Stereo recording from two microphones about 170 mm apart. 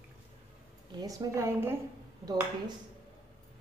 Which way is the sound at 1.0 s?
20° right (ahead or behind).